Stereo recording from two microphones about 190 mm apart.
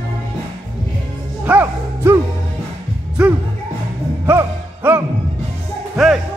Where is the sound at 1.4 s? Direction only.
10° right (ahead or behind).